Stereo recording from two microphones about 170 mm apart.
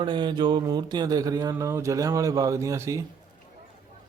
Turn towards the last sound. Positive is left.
turn(degrees=-15)  # may be behind; listen again after turning